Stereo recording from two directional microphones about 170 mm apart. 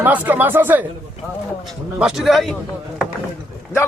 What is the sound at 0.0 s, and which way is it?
Speech, 10° right (ahead or behind).